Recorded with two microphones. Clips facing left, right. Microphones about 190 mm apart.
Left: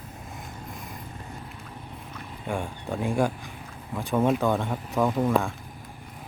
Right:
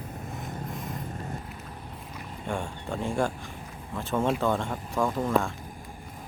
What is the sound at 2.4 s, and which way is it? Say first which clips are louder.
Speech: left 2 dB; centre (ahead or behind).